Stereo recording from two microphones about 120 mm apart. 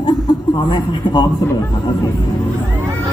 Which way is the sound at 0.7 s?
40° left (ahead or behind).